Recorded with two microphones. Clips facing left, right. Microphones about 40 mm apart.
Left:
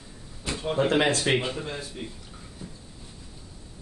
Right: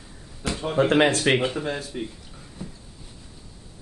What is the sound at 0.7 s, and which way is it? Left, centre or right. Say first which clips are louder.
Speech: right 4 dB; right.